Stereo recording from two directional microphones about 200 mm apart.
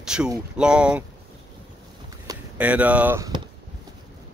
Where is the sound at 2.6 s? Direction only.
5° right (ahead or behind).